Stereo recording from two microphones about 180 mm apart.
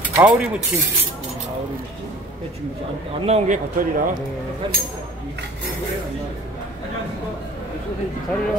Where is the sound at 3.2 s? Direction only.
35° right (ahead or behind).